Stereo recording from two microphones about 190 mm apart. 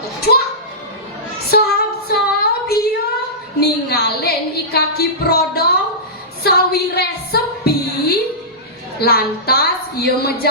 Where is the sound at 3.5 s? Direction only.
55° left (ahead or behind).